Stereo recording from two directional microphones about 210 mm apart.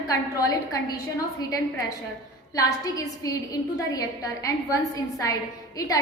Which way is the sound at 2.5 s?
15° left (ahead or behind).